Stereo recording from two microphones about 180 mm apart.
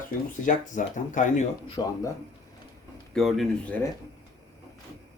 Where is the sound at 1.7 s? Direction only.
20° left (ahead or behind).